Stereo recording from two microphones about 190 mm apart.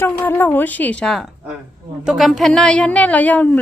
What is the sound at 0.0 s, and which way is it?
A woman's voice, 10° left (ahead or behind).